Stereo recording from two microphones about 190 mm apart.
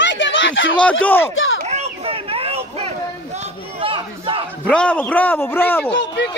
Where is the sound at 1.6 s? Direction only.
35° right (ahead or behind).